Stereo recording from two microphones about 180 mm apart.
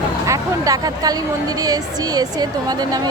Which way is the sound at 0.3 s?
20° right (ahead or behind).